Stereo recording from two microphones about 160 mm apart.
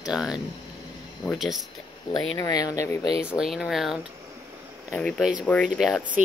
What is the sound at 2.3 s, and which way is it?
Speech, 20° left (ahead or behind).